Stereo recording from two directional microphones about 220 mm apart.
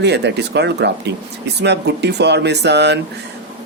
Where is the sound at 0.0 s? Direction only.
50° right (ahead or behind).